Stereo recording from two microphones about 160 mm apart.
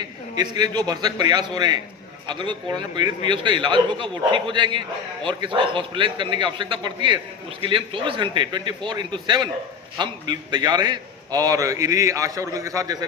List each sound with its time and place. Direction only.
0.3 s a man's voice: 25° right (ahead or behind)